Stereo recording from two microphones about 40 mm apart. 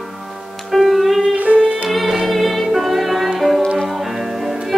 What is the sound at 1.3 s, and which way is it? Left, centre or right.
Music, right.